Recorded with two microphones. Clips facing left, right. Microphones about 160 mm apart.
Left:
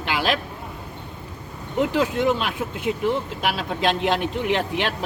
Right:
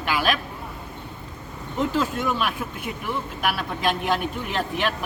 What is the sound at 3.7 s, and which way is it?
A man's voice, 70° left (ahead or behind).